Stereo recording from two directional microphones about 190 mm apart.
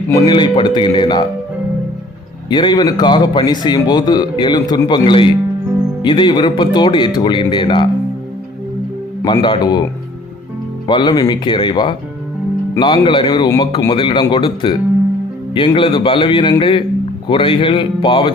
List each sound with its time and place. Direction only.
0.1 s a man's voice: 20° left (ahead or behind)
2.5 s a man's voice: 25° left (ahead or behind)
9.2 s a man's voice: 25° left (ahead or behind)
10.8 s a man's voice: 25° left (ahead or behind)